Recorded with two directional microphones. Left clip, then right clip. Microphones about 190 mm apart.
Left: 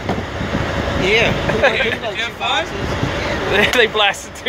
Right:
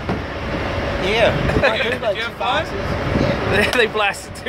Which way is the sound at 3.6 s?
5° right (ahead or behind).